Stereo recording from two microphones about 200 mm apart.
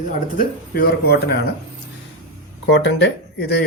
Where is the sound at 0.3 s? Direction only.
50° left (ahead or behind).